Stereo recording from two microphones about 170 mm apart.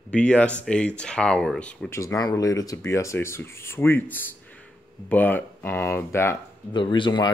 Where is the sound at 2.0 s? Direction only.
20° left (ahead or behind).